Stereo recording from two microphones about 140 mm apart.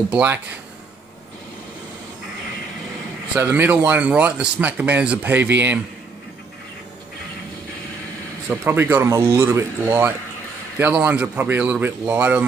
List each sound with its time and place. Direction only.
0.1 s speech: 10° right (ahead or behind)
3.3 s speech: 15° right (ahead or behind)
8.5 s speech: 15° right (ahead or behind)